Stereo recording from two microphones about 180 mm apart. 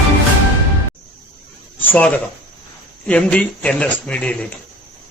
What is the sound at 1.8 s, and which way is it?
Speech, 10° left (ahead or behind).